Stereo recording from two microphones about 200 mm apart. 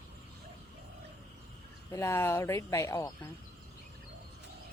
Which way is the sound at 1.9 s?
15° left (ahead or behind).